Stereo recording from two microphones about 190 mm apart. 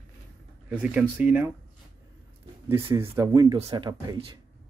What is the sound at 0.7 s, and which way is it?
Speech, 5° right (ahead or behind).